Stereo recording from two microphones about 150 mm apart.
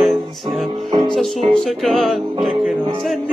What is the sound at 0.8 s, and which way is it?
Music, 35° right (ahead or behind).